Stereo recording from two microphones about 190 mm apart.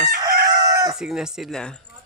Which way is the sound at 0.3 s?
55° right (ahead or behind).